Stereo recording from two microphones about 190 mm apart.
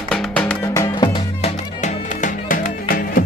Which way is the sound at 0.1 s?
5° left (ahead or behind).